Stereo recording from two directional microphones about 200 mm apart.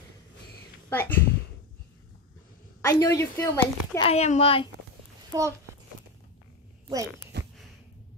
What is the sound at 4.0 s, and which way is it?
Speech, 30° left (ahead or behind).